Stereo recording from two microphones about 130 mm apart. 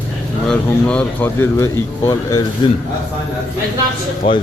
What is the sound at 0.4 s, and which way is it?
Speech, 10° left (ahead or behind).